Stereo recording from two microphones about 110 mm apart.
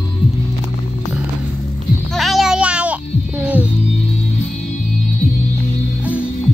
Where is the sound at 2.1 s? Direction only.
Centre (ahead or behind).